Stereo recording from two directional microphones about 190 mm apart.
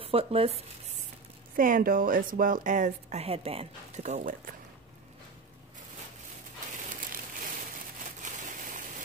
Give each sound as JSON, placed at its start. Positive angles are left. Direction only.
{"t": 0.0, "sound": "speech", "side_deg": -30}
{"t": 1.6, "sound": "speech", "side_deg": -50}
{"t": 6.9, "sound": "a sound", "side_deg": -45}